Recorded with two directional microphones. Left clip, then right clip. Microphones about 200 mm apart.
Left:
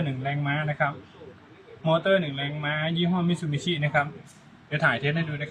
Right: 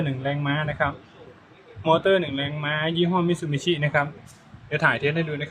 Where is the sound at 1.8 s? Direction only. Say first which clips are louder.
Right 3 dB; 40° right (ahead or behind).